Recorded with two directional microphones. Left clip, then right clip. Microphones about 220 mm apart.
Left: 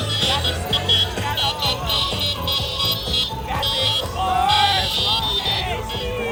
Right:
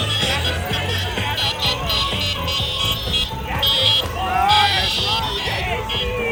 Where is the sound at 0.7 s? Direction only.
40° left (ahead or behind).